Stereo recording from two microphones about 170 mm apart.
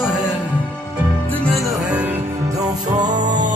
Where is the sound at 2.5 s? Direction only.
25° right (ahead or behind).